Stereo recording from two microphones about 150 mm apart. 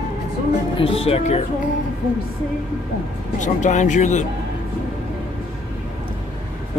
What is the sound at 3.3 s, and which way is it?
Speech, 55° left (ahead or behind).